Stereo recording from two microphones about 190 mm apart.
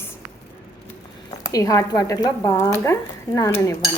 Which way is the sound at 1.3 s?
20° left (ahead or behind).